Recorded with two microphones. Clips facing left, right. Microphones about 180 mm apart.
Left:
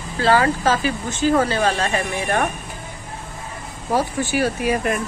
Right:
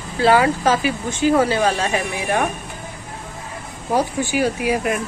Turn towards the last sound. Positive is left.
turn(degrees=-5)  # may be behind; listen again after turning